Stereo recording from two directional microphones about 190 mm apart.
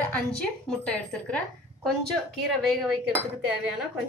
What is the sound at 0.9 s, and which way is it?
Speech, 5° left (ahead or behind).